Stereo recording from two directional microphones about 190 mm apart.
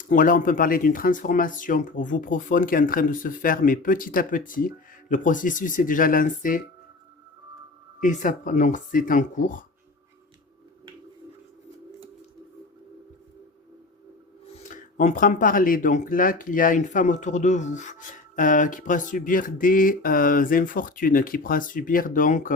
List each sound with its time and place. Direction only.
0.0 s speech: 45° left (ahead or behind)
8.0 s speech: 45° left (ahead or behind)
14.6 s speech: 45° left (ahead or behind)